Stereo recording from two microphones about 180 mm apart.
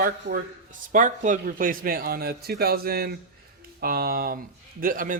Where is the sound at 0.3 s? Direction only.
45° right (ahead or behind).